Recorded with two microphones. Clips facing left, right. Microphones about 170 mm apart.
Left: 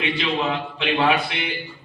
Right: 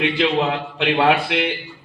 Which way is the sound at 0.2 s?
60° right (ahead or behind).